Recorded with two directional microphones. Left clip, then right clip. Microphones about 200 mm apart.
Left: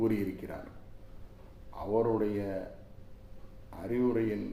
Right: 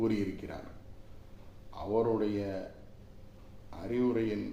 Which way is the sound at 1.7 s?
Centre (ahead or behind).